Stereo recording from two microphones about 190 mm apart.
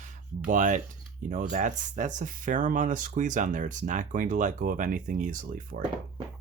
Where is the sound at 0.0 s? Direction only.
45° right (ahead or behind).